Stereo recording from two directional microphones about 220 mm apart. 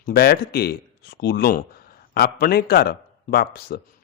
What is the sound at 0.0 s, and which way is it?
Speech, 45° left (ahead or behind).